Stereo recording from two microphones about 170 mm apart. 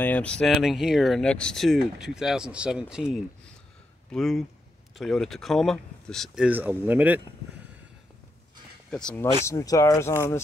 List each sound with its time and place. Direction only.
0.0 s speech: 10° left (ahead or behind); by 7.2 s 10° right (ahead or behind)
8.9 s speech: 10° left (ahead or behind)
9.5 s speech: 20° left (ahead or behind)